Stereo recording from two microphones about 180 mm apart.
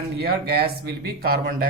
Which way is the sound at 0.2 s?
60° right (ahead or behind).